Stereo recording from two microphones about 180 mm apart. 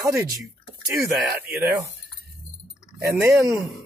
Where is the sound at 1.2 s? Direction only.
Centre (ahead or behind).